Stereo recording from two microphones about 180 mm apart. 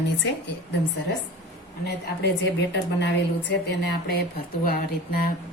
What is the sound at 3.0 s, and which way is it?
Speech, 75° left (ahead or behind).